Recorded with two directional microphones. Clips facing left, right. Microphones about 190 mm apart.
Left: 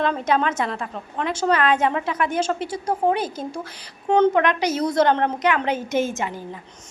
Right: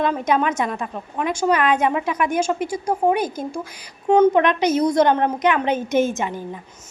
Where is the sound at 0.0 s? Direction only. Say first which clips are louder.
Right 1 dB; 15° right (ahead or behind).